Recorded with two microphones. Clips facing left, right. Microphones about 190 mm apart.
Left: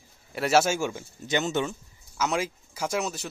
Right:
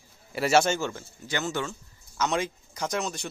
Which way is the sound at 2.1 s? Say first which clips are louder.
Even; 5° left (ahead or behind).